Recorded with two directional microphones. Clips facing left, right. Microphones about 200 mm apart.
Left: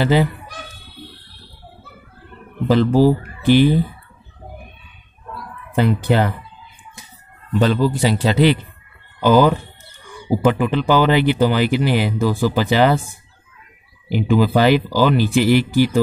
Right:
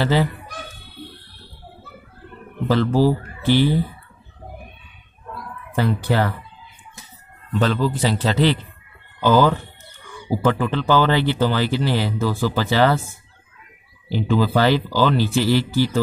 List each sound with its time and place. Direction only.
0.0 s speech: 15° left (ahead or behind)
2.7 s speech: 15° left (ahead or behind)
5.8 s speech: 20° left (ahead or behind)
7.5 s speech: 15° left (ahead or behind)